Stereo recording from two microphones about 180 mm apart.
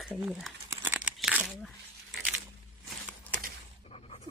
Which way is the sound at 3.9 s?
35° left (ahead or behind).